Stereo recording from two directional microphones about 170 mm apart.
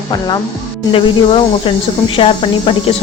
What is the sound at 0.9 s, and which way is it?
Speech, 30° left (ahead or behind).